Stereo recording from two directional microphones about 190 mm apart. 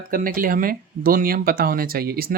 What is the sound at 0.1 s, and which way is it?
Speech, 50° right (ahead or behind).